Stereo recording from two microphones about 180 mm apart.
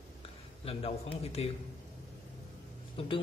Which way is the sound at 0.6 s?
30° left (ahead or behind).